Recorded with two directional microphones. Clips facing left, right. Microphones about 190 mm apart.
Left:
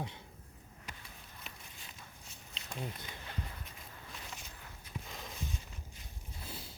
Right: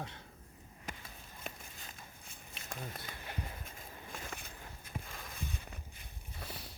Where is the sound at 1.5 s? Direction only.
50° right (ahead or behind).